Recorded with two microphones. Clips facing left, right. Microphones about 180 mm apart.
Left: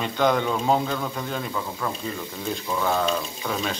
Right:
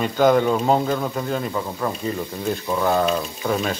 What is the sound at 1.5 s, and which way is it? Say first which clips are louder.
Speech: right 4 dB; 25° right (ahead or behind).